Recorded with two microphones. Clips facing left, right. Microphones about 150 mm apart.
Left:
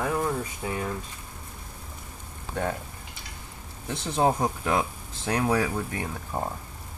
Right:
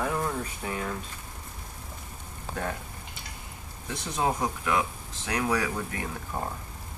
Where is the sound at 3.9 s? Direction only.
30° left (ahead or behind).